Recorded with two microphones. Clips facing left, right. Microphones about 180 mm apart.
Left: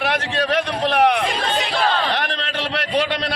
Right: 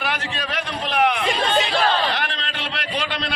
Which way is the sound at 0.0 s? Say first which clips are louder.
Left 6 dB; 70° left (ahead or behind).